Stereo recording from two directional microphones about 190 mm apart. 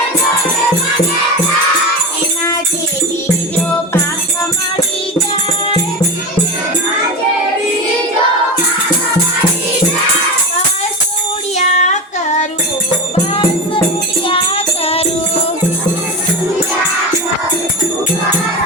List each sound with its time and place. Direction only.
11.5 s child singing: 40° left (ahead or behind)
14.3 s music: 30° left (ahead or behind)